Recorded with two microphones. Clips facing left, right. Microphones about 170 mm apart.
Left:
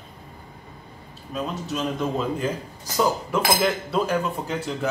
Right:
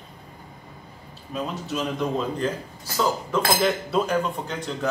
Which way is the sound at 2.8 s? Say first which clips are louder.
Left 2 dB; 15° left (ahead or behind).